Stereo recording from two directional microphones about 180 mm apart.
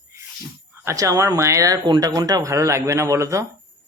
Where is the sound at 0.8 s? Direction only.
20° right (ahead or behind).